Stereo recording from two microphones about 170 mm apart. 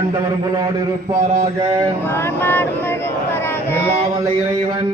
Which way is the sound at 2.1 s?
10° left (ahead or behind).